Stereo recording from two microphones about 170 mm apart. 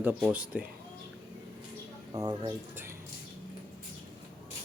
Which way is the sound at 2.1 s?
25° right (ahead or behind).